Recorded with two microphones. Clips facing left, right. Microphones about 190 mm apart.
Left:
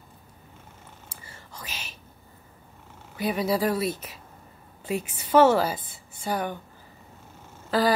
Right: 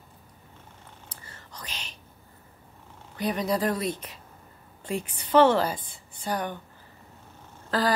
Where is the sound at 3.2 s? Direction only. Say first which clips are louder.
Left 2 dB; 5° left (ahead or behind).